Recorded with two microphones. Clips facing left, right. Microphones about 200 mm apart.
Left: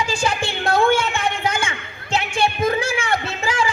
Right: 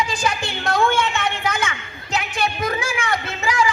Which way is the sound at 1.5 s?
30° left (ahead or behind).